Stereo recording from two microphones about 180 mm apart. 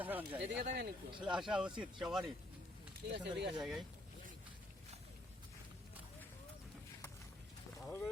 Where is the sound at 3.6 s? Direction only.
Centre (ahead or behind).